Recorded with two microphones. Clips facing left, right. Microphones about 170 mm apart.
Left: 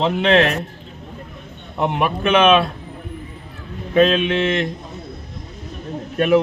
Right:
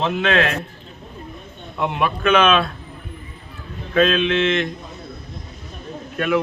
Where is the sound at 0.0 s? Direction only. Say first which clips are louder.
Left 4 dB; 20° left (ahead or behind).